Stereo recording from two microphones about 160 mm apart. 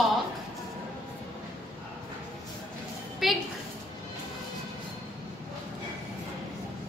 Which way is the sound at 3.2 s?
Centre (ahead or behind).